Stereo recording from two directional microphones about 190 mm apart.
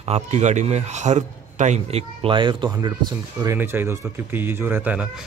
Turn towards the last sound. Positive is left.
turn(degrees=-10)  # may be behind; listen again after turning